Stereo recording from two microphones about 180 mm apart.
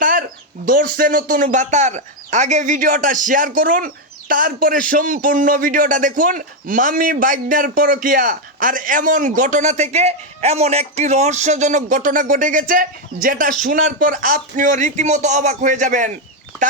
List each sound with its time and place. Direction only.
0.0 s speech: 50° right (ahead or behind)